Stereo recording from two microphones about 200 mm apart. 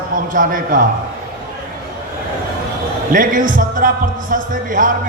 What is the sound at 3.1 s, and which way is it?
Speech, 45° right (ahead or behind).